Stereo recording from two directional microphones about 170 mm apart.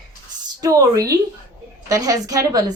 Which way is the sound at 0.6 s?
20° right (ahead or behind).